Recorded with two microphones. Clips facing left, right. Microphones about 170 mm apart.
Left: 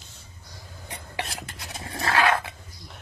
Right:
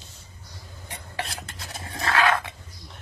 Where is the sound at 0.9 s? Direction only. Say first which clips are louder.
Even; 25° left (ahead or behind).